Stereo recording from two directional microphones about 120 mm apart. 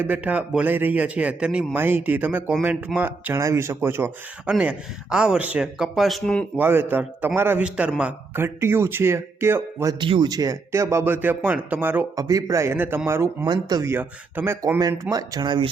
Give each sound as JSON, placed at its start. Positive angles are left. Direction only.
{"t": 0.0, "sound": "a man's voice", "side_deg": -15}
{"t": 4.4, "sound": "speech", "side_deg": -5}
{"t": 6.6, "sound": "a man's voice", "side_deg": -15}
{"t": 8.4, "sound": "speech", "side_deg": -20}
{"t": 10.0, "sound": "speech", "side_deg": -40}
{"t": 12.1, "sound": "speech", "side_deg": -30}
{"t": 13.4, "sound": "speech", "side_deg": -35}
{"t": 13.8, "sound": "speech", "side_deg": -15}
{"t": 15.1, "sound": "speech", "side_deg": -35}